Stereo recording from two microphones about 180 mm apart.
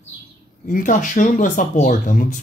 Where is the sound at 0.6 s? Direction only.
45° left (ahead or behind).